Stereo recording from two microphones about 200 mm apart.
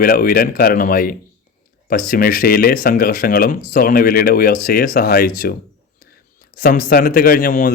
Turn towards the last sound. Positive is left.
turn(degrees=45)  # may be behind; listen again after turning